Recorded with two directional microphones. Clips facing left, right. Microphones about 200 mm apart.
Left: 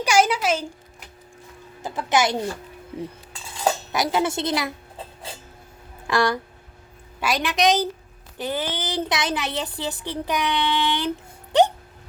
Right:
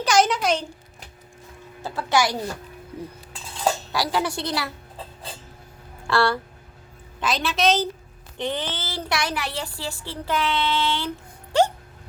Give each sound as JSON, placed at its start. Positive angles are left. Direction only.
{"t": 0.0, "sound": "speech", "side_deg": 10}
{"t": 1.8, "sound": "speech", "side_deg": 20}
{"t": 3.9, "sound": "speech", "side_deg": 20}
{"t": 6.1, "sound": "a woman's voice", "side_deg": 15}
{"t": 11.5, "sound": "hiccup", "side_deg": 20}